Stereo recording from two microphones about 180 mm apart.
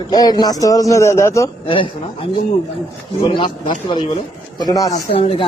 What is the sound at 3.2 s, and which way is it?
Speech, 25° left (ahead or behind).